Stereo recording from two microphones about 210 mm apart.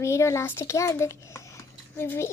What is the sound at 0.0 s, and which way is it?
A child's voice, 15° left (ahead or behind).